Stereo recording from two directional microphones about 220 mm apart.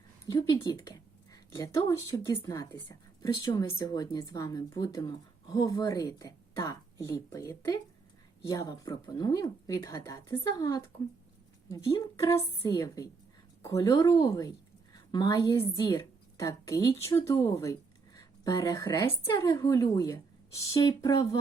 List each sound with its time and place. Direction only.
0.3 s a woman's voice: 15° left (ahead or behind)